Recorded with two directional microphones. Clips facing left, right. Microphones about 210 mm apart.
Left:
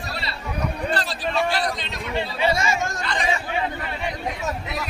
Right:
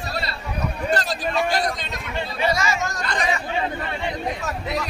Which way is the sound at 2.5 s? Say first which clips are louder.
Right 1 dB; 25° left (ahead or behind).